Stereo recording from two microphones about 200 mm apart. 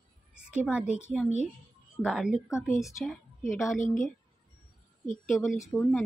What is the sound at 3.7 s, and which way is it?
Speech, 40° left (ahead or behind).